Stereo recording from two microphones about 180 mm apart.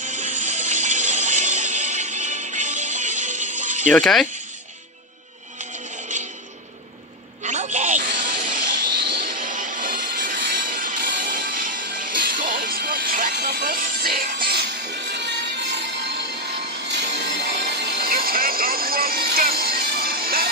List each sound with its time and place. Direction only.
0.0 s music: 40° right (ahead or behind)
3.9 s speech: centre (ahead or behind)
5.6 s music: 40° right (ahead or behind)
7.4 s a sound: 40° right (ahead or behind)
8.9 s music: 65° right (ahead or behind)
13.3 s music: 70° right (ahead or behind)
16.8 s music: 75° right (ahead or behind); by 20.4 s 55° right (ahead or behind)